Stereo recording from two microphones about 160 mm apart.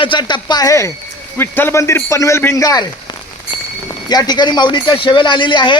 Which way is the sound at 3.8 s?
25° left (ahead or behind).